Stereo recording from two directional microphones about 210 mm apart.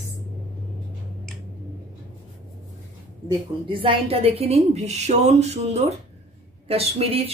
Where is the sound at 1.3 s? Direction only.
Centre (ahead or behind).